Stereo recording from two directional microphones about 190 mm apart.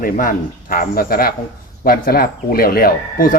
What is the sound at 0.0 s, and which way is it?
Speech, 45° left (ahead or behind).